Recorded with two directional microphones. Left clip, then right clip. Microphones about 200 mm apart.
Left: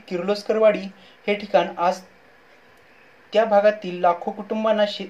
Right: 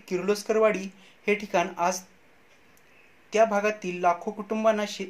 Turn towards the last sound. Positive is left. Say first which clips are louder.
# left 4 dB
turn(degrees=-25)  # may be behind; listen again after turning